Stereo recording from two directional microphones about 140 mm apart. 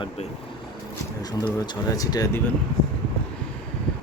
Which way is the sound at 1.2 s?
25° left (ahead or behind).